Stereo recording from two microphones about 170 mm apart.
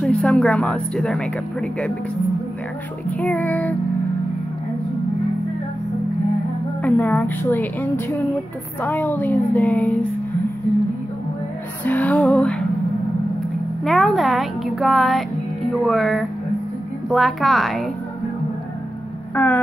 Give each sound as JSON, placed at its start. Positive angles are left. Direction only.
{"t": 0.0, "sound": "speech", "side_deg": 5}
{"t": 3.1, "sound": "a woman's voice", "side_deg": 10}
{"t": 6.8, "sound": "a woman's voice", "side_deg": 10}
{"t": 11.8, "sound": "music", "side_deg": 10}
{"t": 13.8, "sound": "speech", "side_deg": 0}
{"t": 19.3, "sound": "a woman's voice", "side_deg": 10}